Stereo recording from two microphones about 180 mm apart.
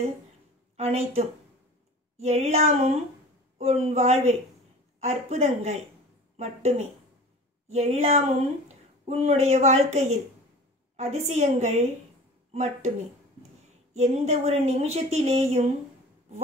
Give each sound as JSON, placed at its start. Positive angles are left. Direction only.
{"t": 0.7, "sound": "speech", "side_deg": -35}
{"t": 13.9, "sound": "speech", "side_deg": -35}